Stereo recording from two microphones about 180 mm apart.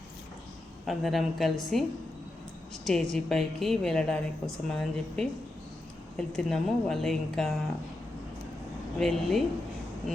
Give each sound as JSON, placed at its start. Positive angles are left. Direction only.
{"t": 0.9, "sound": "a woman's voice", "side_deg": 0}
{"t": 2.8, "sound": "a woman's voice", "side_deg": 5}
{"t": 9.0, "sound": "a woman's voice", "side_deg": 0}